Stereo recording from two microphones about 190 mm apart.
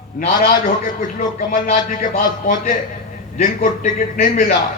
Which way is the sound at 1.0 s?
45° left (ahead or behind).